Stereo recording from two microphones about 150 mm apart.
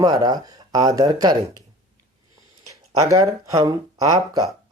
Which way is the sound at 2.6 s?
20° right (ahead or behind).